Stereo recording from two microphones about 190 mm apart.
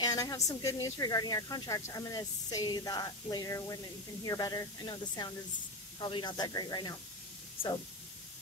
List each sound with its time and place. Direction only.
0.0 s speech: 20° left (ahead or behind)